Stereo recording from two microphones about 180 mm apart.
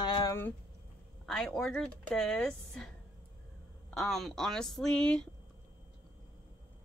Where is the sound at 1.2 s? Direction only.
5° left (ahead or behind).